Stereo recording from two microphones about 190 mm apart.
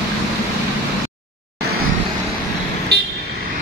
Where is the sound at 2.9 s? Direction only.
60° right (ahead or behind).